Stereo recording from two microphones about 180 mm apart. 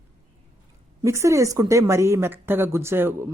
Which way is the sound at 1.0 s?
15° right (ahead or behind).